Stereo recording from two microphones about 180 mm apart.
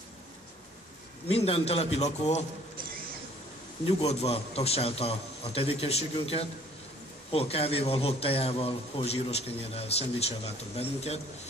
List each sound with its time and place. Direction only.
1.3 s a man's voice: 35° left (ahead or behind)
3.8 s a man's voice: 35° left (ahead or behind)